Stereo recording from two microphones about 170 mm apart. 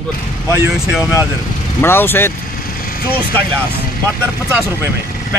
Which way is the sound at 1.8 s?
15° left (ahead or behind).